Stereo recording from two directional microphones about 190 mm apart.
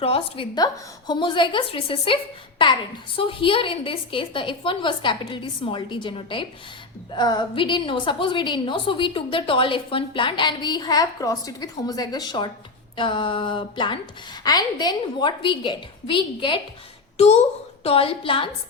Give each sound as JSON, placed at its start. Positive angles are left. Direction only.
{"t": 0.0, "sound": "a woman's voice", "side_deg": 30}
{"t": 3.2, "sound": "a woman's voice", "side_deg": 25}